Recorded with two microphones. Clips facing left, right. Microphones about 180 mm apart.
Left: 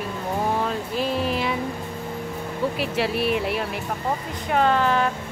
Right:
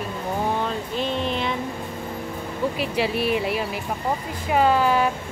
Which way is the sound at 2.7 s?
Centre (ahead or behind).